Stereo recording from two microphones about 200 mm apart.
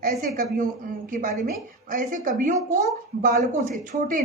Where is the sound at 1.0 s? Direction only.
45° right (ahead or behind).